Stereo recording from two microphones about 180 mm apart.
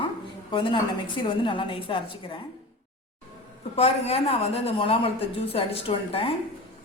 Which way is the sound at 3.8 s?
35° left (ahead or behind).